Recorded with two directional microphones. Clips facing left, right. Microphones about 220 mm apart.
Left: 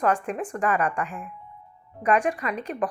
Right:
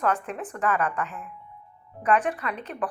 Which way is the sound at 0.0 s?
15° left (ahead or behind).